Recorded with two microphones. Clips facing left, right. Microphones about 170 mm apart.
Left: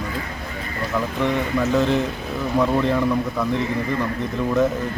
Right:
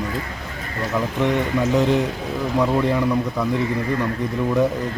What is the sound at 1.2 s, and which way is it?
Speech, 15° right (ahead or behind).